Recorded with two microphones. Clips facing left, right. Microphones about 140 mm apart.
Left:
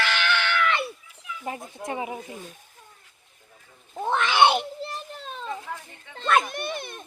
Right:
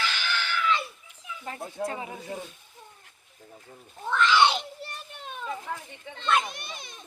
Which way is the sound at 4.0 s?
60° left (ahead or behind).